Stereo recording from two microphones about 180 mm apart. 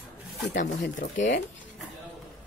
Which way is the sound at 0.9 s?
45° left (ahead or behind).